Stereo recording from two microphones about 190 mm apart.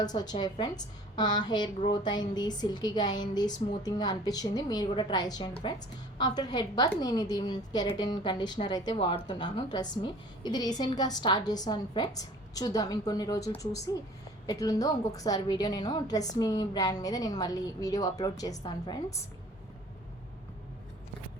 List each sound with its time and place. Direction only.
0.0 s a woman's voice: 20° left (ahead or behind)